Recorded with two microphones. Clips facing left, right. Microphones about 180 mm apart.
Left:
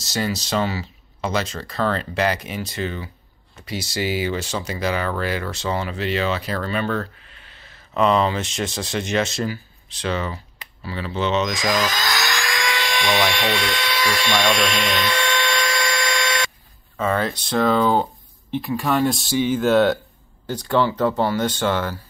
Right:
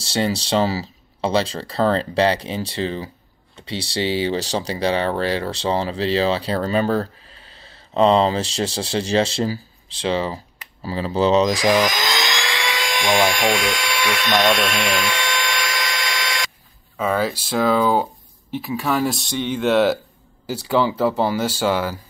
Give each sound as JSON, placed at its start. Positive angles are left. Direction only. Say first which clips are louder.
{"t": 0.0, "sound": "speech", "louder": "right 3 dB", "side_deg": -30}
{"t": 11.7, "sound": "a sound", "louder": "right 4 dB", "side_deg": -15}
{"t": 16.9, "sound": "speech", "louder": "right 1 dB", "side_deg": -10}